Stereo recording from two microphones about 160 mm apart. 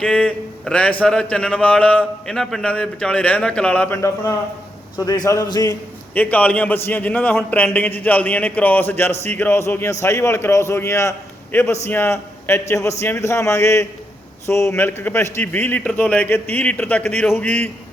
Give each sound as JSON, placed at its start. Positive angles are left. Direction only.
{"t": 0.0, "sound": "speech", "side_deg": 5}
{"t": 6.1, "sound": "speech", "side_deg": 10}